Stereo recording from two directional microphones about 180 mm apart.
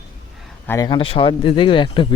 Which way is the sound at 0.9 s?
30° left (ahead or behind).